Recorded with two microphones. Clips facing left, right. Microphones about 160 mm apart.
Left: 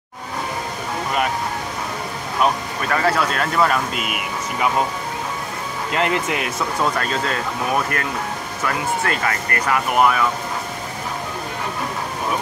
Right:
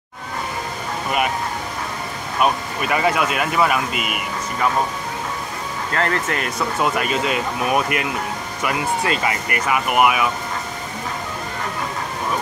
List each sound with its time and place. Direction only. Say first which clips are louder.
2.4 s speech: even; 10° right (ahead or behind)
5.9 s speech: left 1 dB; 15° left (ahead or behind)
6.8 s speech: right 1 dB; 15° right (ahead or behind)